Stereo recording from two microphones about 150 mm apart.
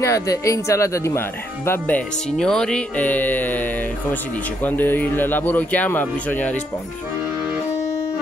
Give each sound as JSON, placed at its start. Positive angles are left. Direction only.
{"t": 0.0, "sound": "speech", "side_deg": 20}
{"t": 4.6, "sound": "speech", "side_deg": 10}